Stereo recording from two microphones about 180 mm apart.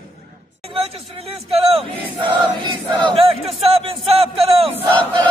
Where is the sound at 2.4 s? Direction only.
25° right (ahead or behind).